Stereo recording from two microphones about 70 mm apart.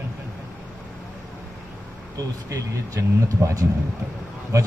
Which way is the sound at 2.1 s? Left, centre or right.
Right.